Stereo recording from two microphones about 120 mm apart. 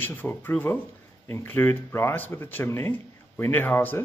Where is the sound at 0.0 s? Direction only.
15° left (ahead or behind).